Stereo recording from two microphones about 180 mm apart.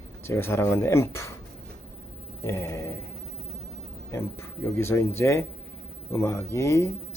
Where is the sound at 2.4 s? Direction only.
15° left (ahead or behind).